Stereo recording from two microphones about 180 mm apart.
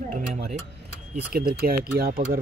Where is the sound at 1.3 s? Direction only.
55° right (ahead or behind).